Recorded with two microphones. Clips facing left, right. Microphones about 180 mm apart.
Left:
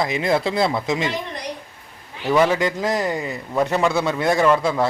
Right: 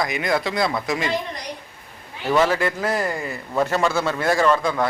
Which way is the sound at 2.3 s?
10° left (ahead or behind).